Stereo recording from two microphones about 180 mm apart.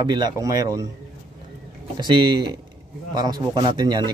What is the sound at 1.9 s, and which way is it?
Speech, 25° right (ahead or behind).